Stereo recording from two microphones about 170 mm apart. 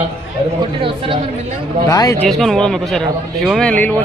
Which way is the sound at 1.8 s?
20° left (ahead or behind).